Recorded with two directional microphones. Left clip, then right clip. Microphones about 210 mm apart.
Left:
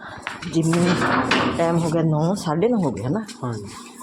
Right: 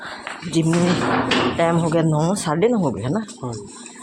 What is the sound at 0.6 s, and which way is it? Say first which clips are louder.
Speech: right 1 dB; 10° right (ahead or behind).